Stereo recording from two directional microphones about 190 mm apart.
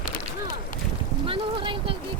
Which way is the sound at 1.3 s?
25° right (ahead or behind).